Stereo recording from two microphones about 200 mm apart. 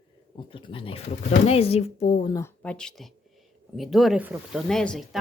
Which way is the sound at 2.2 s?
15° left (ahead or behind).